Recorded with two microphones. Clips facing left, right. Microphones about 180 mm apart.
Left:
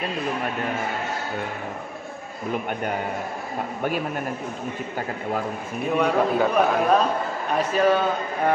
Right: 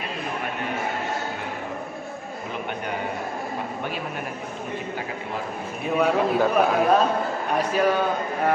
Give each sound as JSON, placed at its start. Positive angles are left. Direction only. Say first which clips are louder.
{"t": 5.9, "sound": "a man's voice", "louder": "even", "side_deg": 0}